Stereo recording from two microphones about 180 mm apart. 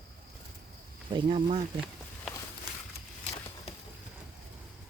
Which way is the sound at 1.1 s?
30° right (ahead or behind).